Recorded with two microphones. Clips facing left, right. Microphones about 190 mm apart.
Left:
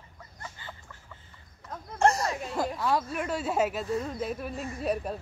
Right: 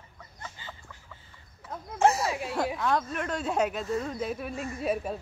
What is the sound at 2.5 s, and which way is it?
Speech, centre (ahead or behind).